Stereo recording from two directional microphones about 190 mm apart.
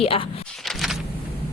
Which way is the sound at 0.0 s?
30° left (ahead or behind).